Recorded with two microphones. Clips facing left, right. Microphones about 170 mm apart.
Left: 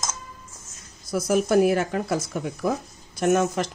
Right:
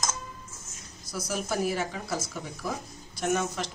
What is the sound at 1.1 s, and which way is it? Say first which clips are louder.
Speech: left 11 dB; 55° left (ahead or behind).